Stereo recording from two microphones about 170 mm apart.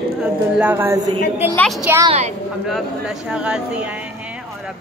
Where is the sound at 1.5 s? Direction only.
Centre (ahead or behind).